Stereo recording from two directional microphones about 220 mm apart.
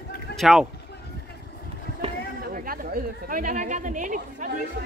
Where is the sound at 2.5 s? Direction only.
40° right (ahead or behind).